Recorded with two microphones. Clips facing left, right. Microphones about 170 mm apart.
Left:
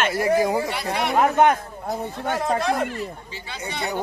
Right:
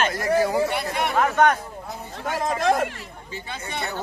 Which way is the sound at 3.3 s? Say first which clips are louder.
Right 2 dB; 50° right (ahead or behind).